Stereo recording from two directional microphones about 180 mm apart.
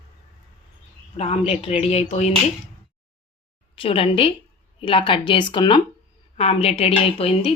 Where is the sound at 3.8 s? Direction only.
30° left (ahead or behind).